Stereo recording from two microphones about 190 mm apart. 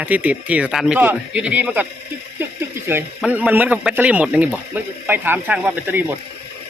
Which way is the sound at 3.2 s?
5° right (ahead or behind).